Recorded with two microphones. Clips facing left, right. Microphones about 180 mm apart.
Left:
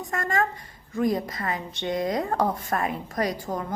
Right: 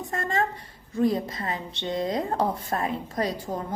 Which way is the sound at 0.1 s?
30° right (ahead or behind).